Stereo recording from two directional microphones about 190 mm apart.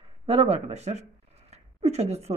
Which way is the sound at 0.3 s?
30° right (ahead or behind).